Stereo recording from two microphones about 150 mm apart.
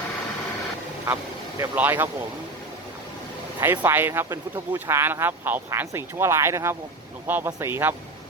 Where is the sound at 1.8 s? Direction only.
15° right (ahead or behind).